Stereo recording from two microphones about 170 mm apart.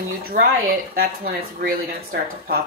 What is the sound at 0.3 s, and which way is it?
A woman's voice, 60° right (ahead or behind).